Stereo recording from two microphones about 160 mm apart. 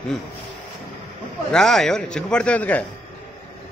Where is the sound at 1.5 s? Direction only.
5° left (ahead or behind).